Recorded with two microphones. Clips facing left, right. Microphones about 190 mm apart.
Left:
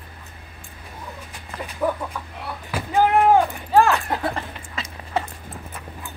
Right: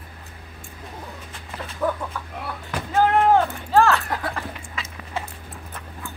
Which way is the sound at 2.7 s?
10° left (ahead or behind).